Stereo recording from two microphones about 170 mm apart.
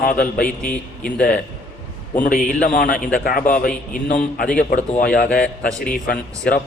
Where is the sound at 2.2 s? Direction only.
55° left (ahead or behind); by 5.0 s 40° left (ahead or behind).